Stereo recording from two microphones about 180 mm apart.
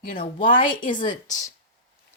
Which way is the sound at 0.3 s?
50° left (ahead or behind).